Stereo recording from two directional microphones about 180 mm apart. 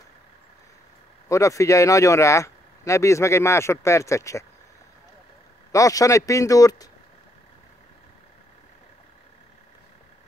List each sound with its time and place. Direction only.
1.3 s speech: 15° left (ahead or behind)
5.7 s speech: 20° left (ahead or behind)